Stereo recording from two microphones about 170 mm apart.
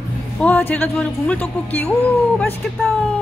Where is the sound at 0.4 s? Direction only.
10° left (ahead or behind).